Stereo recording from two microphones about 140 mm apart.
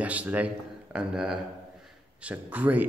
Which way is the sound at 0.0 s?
10° right (ahead or behind).